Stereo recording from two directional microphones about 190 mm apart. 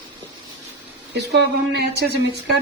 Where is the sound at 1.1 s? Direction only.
65° right (ahead or behind).